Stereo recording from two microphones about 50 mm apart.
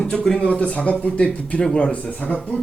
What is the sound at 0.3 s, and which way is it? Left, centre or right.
A man's voice, centre.